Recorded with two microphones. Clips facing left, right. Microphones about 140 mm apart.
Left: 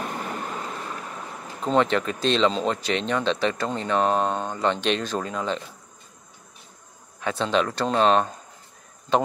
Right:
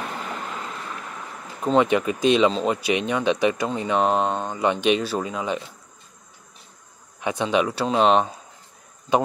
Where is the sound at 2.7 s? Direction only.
10° right (ahead or behind).